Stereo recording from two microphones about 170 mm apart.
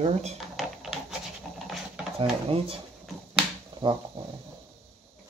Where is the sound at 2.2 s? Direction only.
35° right (ahead or behind).